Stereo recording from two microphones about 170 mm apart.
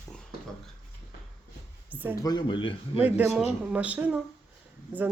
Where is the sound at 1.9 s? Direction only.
10° right (ahead or behind).